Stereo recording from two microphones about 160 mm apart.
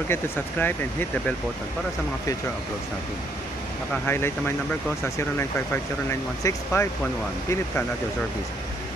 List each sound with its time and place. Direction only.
0.1 s speech: 10° left (ahead or behind)
3.9 s speech: 15° left (ahead or behind)
6.0 s speech: 15° left (ahead or behind)